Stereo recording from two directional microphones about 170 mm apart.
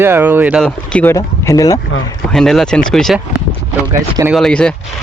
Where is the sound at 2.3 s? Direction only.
5° left (ahead or behind).